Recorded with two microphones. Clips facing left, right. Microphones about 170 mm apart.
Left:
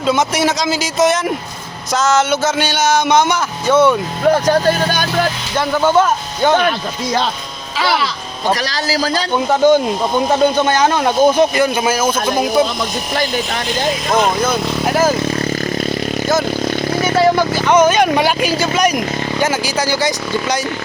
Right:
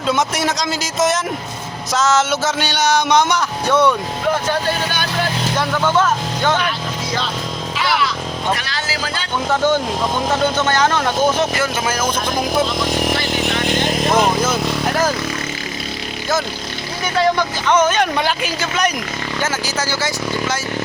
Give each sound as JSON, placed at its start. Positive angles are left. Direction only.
{"t": 0.1, "sound": "a sound", "side_deg": 0}
{"t": 4.4, "sound": "speech", "side_deg": 45}
{"t": 5.8, "sound": "speech", "side_deg": 15}
{"t": 7.8, "sound": "a man's voice", "side_deg": 35}
{"t": 9.5, "sound": "speech", "side_deg": 15}
{"t": 14.5, "sound": "vehicle", "side_deg": 5}
{"t": 17.2, "sound": "speech", "side_deg": 10}